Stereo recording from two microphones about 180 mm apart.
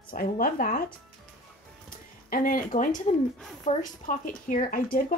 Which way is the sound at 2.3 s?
50° left (ahead or behind).